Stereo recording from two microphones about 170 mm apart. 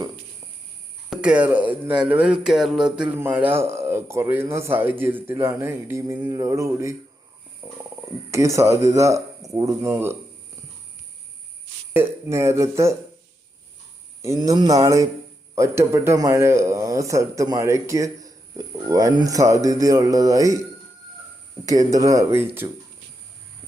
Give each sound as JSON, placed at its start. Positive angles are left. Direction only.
{"t": 1.1, "sound": "speech", "side_deg": -5}
{"t": 7.6, "sound": "wild animals", "side_deg": -15}
{"t": 8.3, "sound": "speech", "side_deg": -15}
{"t": 11.9, "sound": "speech", "side_deg": -15}
{"t": 14.2, "sound": "a sound", "side_deg": -20}
{"t": 15.5, "sound": "a man's voice", "side_deg": -15}
{"t": 21.7, "sound": "a sound", "side_deg": -20}